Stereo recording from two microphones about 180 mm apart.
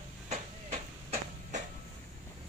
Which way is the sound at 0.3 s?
40° right (ahead or behind).